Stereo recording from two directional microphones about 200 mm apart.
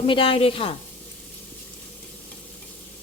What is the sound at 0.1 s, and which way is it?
Speech, 25° left (ahead or behind).